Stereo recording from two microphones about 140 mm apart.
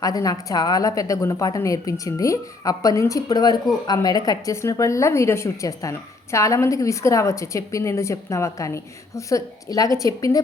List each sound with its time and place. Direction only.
0.0 s a woman's voice: 25° left (ahead or behind)